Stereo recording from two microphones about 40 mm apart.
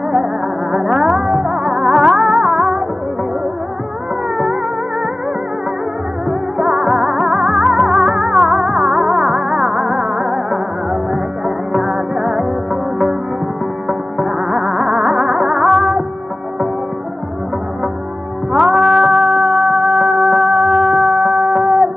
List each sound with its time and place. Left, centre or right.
0.1 s music: centre
6.6 s music: centre
13.8 s music: centre
18.5 s music: centre